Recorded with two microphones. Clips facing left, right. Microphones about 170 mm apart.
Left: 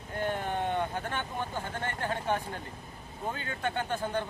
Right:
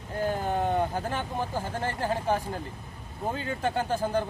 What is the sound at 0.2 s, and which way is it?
Speech, 35° right (ahead or behind).